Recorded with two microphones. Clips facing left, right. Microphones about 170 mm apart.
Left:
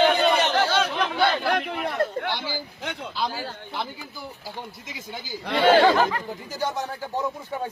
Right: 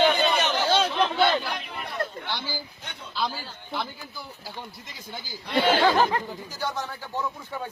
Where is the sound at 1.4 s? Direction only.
65° left (ahead or behind).